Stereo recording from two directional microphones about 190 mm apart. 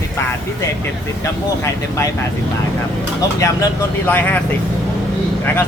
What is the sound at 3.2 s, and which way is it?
Speech, 15° left (ahead or behind).